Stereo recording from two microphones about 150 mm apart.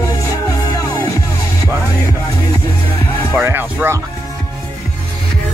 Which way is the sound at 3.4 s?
15° right (ahead or behind).